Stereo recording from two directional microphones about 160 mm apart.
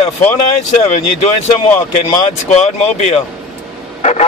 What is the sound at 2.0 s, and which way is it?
Speech, 45° left (ahead or behind).